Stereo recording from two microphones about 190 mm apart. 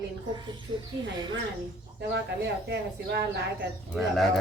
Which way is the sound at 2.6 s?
60° right (ahead or behind).